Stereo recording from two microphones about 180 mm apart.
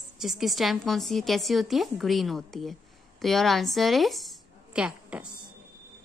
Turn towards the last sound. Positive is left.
turn(degrees=-5)  # may be behind; listen again after turning